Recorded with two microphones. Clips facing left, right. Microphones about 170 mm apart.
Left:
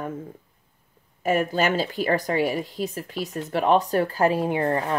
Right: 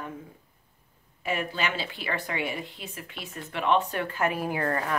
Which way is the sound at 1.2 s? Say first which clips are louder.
Left 8 dB; 45° left (ahead or behind).